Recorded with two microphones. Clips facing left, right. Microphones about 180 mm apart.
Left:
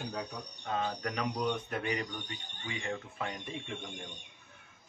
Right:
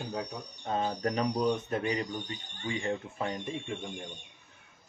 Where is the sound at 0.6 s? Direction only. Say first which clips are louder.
Right 4 dB; 35° right (ahead or behind).